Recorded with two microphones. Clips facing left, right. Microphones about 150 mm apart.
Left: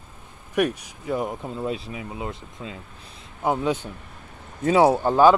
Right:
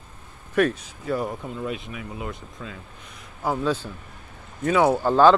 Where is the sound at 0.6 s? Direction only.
15° left (ahead or behind).